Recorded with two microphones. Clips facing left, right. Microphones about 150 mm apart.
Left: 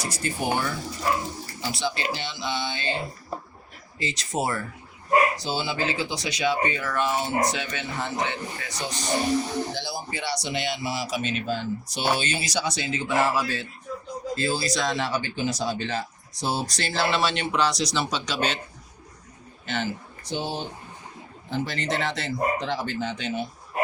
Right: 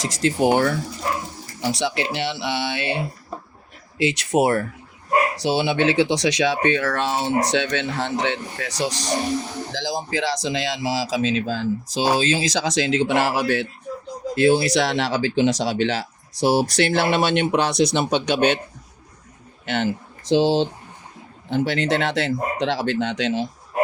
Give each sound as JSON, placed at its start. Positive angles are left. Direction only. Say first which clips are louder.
{"t": 0.0, "sound": "speech", "louder": "right 9 dB", "side_deg": -90}
{"t": 5.4, "sound": "speech", "louder": "right 8 dB", "side_deg": -75}
{"t": 19.6, "sound": "speech", "louder": "right 6 dB", "side_deg": -65}
{"t": 21.5, "sound": "speech", "louder": "right 7 dB", "side_deg": -65}